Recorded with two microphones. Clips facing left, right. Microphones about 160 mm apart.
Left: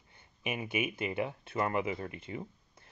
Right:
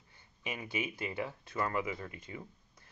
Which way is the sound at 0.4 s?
20° left (ahead or behind).